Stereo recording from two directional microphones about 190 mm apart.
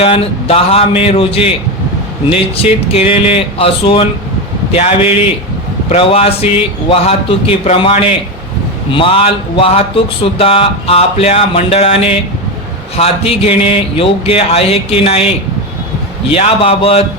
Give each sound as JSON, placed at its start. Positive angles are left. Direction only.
{"t": 0.0, "sound": "a man's voice", "side_deg": 30}
{"t": 16.3, "sound": "a man's voice", "side_deg": 30}